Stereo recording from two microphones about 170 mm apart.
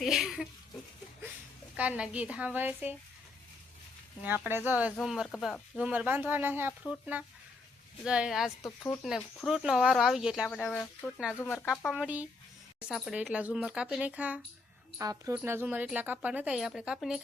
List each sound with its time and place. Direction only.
0.0 s a sound: centre (ahead or behind)
1.7 s speech: 10° right (ahead or behind)
4.4 s speech: 10° right (ahead or behind); by 11.6 s 10° left (ahead or behind)
11.9 s speech: 5° right (ahead or behind)
14.9 s speech: 20° right (ahead or behind); by 17.2 s 5° right (ahead or behind)